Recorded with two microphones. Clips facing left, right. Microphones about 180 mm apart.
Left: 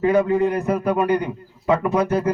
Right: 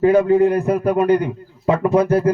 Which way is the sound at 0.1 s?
30° right (ahead or behind).